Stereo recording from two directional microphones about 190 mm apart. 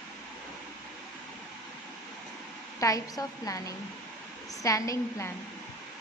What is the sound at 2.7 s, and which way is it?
A woman's voice, 15° left (ahead or behind).